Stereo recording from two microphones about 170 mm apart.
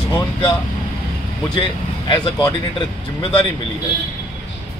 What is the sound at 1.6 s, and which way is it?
Speech, 25° left (ahead or behind).